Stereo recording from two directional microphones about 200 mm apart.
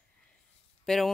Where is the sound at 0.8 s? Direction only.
Centre (ahead or behind).